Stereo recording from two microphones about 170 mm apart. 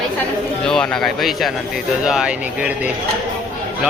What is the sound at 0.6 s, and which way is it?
Speech, 5° left (ahead or behind).